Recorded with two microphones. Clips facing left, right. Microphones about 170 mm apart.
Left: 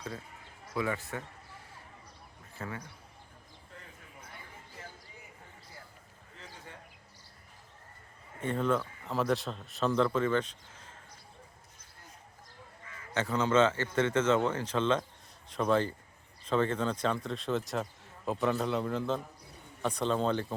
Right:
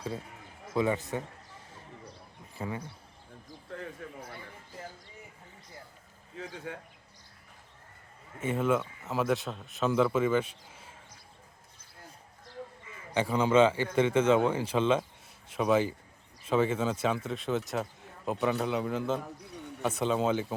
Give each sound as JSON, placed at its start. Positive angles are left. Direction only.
{"t": 0.7, "sound": "a man's voice", "side_deg": -20}
{"t": 2.6, "sound": "a man's voice", "side_deg": -20}
{"t": 8.4, "sound": "speech", "side_deg": -5}
{"t": 13.1, "sound": "speech", "side_deg": -10}